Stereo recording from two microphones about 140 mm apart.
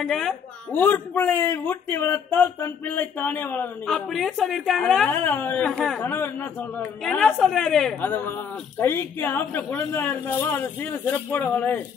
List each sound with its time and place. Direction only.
0.0 s a woman's voice: centre (ahead or behind)
0.7 s speech: 15° left (ahead or behind)
3.8 s a woman's voice: centre (ahead or behind)
5.1 s speech: 15° left (ahead or behind)
5.6 s speech: centre (ahead or behind)
7.1 s a woman's voice: 5° left (ahead or behind)
8.0 s speech: 15° left (ahead or behind)